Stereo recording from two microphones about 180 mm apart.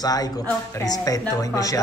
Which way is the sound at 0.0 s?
20° left (ahead or behind).